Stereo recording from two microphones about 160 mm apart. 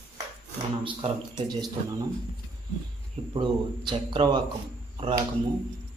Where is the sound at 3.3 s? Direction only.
30° right (ahead or behind).